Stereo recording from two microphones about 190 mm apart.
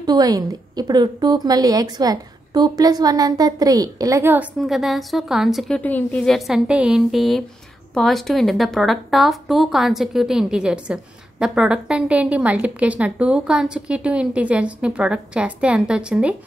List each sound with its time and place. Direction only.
0.0 s a woman's voice: 20° right (ahead or behind)